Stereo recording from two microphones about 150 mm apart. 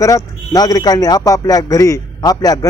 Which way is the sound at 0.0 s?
20° left (ahead or behind).